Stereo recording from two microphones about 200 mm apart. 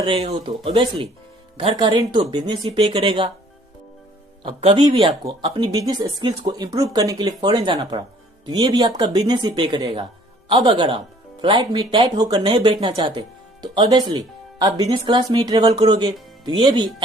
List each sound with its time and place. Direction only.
0.0 s speech: 25° right (ahead or behind)
4.4 s speech: 25° right (ahead or behind)